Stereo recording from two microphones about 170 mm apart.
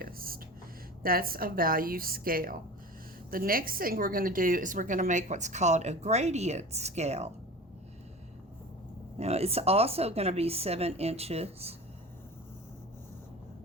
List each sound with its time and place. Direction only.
0.0 s a sound: 60° right (ahead or behind)
1.0 s a woman's voice: 60° right (ahead or behind); by 7.3 s 40° right (ahead or behind)
9.1 s speech: 40° right (ahead or behind)